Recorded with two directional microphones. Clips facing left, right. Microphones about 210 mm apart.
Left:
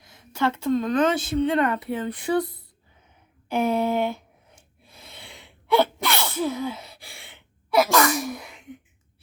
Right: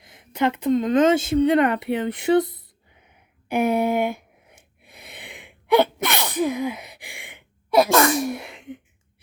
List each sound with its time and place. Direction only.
0.0 s speech: 20° right (ahead or behind)
1.9 s a sound: 20° right (ahead or behind)
7.9 s speech: 25° right (ahead or behind)